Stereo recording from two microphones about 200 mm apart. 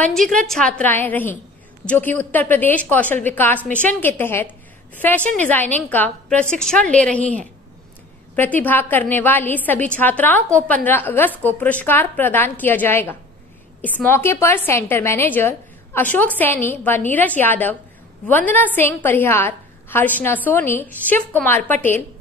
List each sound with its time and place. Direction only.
0.0 s a woman's voice: centre (ahead or behind)
8.4 s a woman's voice: 10° left (ahead or behind)